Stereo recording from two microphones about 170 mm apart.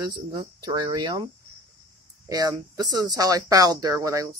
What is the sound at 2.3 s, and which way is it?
Speech, 20° right (ahead or behind).